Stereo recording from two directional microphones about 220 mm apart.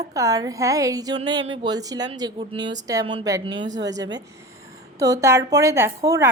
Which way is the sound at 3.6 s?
55° right (ahead or behind).